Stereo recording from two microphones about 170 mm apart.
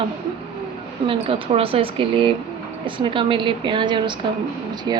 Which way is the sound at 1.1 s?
35° right (ahead or behind).